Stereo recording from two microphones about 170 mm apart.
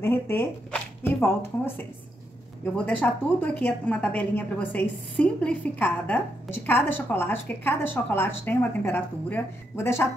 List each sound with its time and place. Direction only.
0.0 s speech: 15° left (ahead or behind)
2.6 s a woman's voice: 10° left (ahead or behind)